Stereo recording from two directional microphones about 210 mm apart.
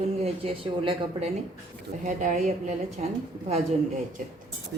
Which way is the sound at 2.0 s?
35° right (ahead or behind).